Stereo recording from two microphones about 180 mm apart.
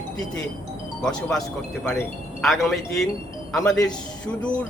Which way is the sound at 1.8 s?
10° left (ahead or behind).